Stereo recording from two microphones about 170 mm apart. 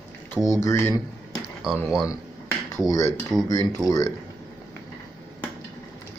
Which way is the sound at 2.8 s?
20° left (ahead or behind).